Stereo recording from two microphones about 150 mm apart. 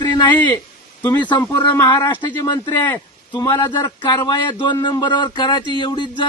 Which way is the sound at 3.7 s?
30° left (ahead or behind).